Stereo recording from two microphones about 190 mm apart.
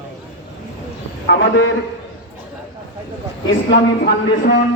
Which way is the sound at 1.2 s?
80° left.